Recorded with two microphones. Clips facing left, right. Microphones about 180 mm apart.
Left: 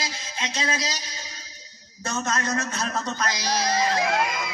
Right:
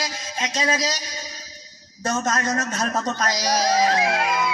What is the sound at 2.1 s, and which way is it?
A man's voice, 45° right (ahead or behind).